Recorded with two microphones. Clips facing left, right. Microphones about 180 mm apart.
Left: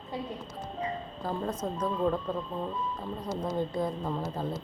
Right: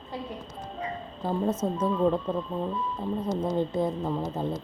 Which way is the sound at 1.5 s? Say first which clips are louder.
Right 4 dB; 5° right (ahead or behind).